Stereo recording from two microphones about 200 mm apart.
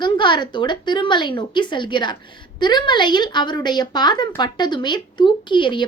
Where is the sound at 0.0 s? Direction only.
20° left (ahead or behind).